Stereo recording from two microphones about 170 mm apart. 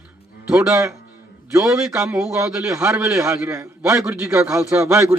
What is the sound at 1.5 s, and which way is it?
A man's voice, 20° right (ahead or behind).